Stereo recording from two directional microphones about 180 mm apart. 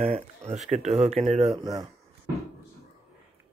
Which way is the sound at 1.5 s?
20° right (ahead or behind).